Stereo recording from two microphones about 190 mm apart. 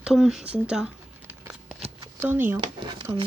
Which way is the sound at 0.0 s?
5° right (ahead or behind).